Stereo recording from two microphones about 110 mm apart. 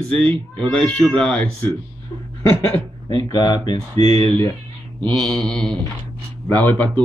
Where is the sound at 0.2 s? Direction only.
10° left (ahead or behind).